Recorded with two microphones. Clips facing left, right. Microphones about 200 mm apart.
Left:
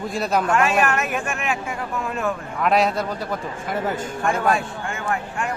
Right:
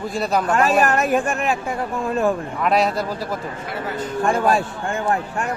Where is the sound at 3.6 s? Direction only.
45° left (ahead or behind).